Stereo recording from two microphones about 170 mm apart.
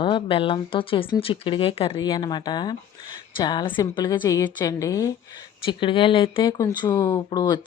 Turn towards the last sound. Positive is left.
turn(degrees=20)  # may be behind; listen again after turning